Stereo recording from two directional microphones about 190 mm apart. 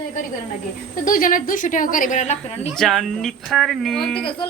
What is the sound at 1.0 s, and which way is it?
A woman's voice, 45° left (ahead or behind).